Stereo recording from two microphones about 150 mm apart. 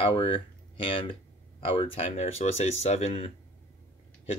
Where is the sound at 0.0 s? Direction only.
35° left (ahead or behind).